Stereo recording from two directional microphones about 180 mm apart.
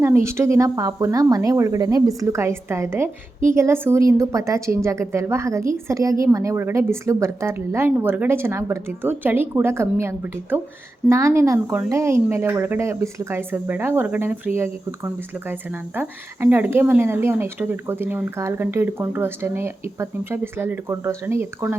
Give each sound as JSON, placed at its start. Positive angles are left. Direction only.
{"t": 0.0, "sound": "speech", "side_deg": -15}